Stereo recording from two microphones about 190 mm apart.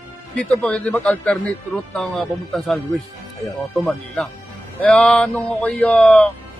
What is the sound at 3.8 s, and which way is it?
Speech, 10° left (ahead or behind).